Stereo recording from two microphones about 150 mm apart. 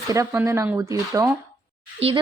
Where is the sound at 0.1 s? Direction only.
20° right (ahead or behind).